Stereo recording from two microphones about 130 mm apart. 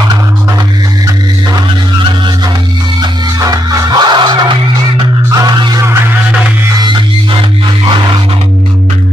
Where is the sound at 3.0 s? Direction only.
30° right (ahead or behind).